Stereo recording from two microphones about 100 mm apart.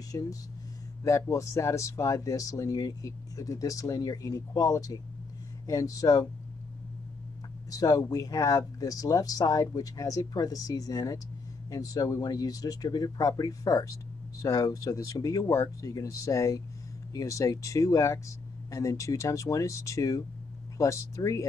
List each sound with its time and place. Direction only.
0.1 s speech: 35° left (ahead or behind)
7.7 s speech: 35° left (ahead or behind)